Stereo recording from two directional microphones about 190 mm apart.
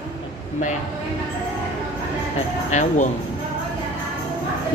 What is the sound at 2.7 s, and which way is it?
Speech, 40° left (ahead or behind).